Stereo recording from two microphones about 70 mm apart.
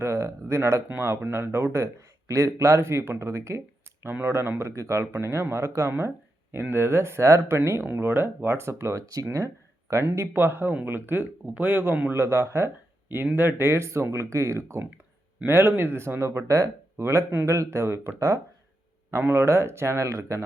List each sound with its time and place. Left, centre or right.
0.0 s speech: right
4.1 s speech: right
9.9 s speech: right
12.1 s speech: right
19.1 s speech: right